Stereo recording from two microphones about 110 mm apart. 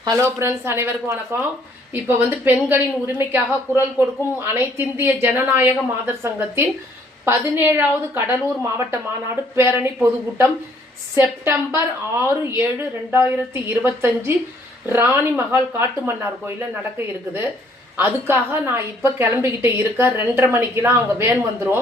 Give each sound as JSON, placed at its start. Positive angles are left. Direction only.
{"t": 0.2, "sound": "a woman's voice", "side_deg": -25}
{"t": 13.1, "sound": "a woman's voice", "side_deg": -20}